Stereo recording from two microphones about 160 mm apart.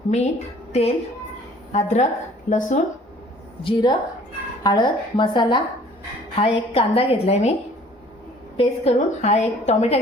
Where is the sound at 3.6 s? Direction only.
30° left (ahead or behind).